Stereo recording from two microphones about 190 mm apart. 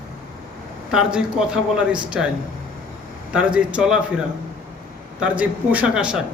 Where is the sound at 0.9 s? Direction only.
5° right (ahead or behind).